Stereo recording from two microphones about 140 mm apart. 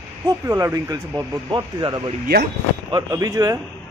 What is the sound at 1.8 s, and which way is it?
A man's voice, 35° right (ahead or behind).